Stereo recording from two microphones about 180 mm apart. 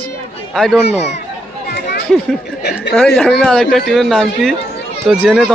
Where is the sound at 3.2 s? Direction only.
Centre (ahead or behind).